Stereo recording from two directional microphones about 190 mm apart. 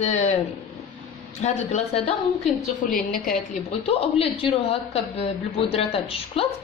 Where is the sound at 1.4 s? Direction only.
35° left (ahead or behind).